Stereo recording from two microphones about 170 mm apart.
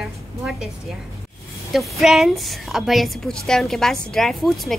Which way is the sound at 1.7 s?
Centre (ahead or behind).